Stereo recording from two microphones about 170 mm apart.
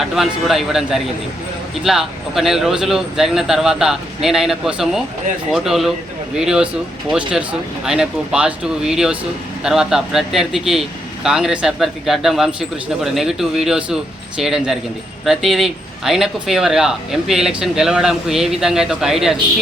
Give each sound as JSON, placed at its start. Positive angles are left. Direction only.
{"t": 0.0, "sound": "a man's voice", "side_deg": 0}